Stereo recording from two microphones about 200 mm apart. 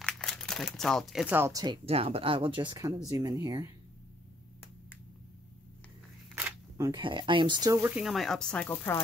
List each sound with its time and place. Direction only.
0.0 s speech: centre (ahead or behind); by 3.7 s 15° right (ahead or behind)
6.3 s camera: 10° right (ahead or behind)
6.9 s speech: 25° right (ahead or behind); by 9.0 s 10° left (ahead or behind)